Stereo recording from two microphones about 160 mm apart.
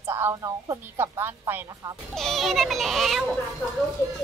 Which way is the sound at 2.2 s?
Centre (ahead or behind).